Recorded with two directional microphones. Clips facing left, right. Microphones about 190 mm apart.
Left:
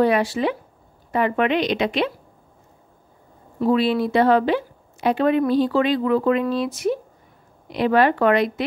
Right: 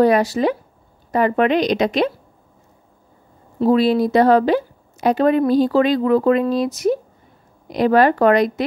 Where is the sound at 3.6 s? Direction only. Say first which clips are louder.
Right 4 dB; 40° right (ahead or behind).